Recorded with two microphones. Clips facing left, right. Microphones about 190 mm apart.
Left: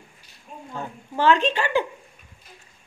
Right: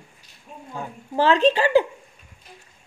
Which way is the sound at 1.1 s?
35° right (ahead or behind).